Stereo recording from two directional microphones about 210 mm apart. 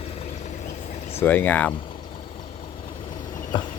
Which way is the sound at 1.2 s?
10° left (ahead or behind).